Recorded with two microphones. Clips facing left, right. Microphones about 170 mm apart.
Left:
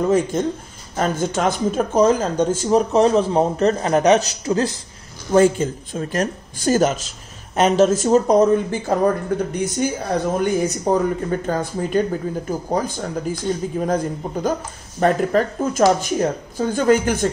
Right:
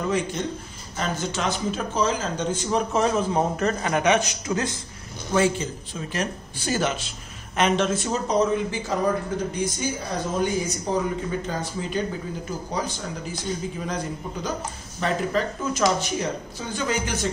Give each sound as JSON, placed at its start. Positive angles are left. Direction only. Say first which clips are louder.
{"t": 0.1, "sound": "speech", "louder": "left 7 dB", "side_deg": 50}
{"t": 5.3, "sound": "speech", "louder": "left 7 dB", "side_deg": 45}